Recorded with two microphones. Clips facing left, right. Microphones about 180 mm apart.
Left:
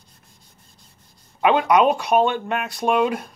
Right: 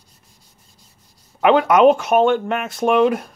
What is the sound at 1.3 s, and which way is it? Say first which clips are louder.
Speech: right 3 dB; 50° right (ahead or behind).